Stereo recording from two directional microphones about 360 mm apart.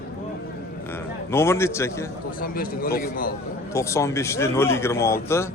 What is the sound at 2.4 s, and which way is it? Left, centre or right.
Speech, left.